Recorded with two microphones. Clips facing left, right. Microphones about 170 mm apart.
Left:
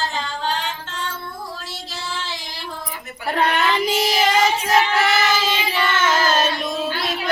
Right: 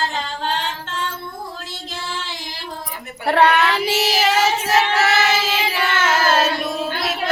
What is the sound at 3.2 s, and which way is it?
Speech, 65° right (ahead or behind).